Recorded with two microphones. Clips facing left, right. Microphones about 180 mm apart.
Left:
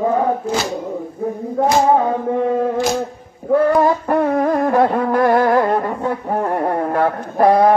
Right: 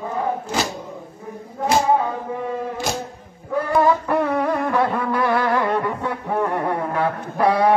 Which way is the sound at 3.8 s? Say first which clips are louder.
Left 3 dB; 35° left (ahead or behind).